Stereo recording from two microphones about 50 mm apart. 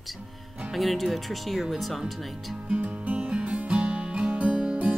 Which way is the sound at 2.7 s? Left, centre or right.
Right.